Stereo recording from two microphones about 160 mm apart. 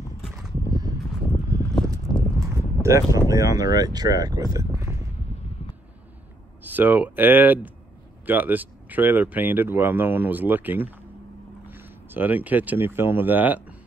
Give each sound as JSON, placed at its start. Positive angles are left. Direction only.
{"t": 0.7, "sound": "a sound", "side_deg": -20}
{"t": 2.1, "sound": "speech", "side_deg": -20}
{"t": 6.6, "sound": "speech", "side_deg": -10}